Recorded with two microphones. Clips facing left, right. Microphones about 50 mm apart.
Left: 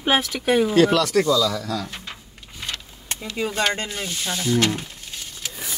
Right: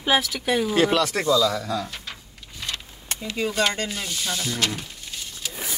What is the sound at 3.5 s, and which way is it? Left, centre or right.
Speech, left.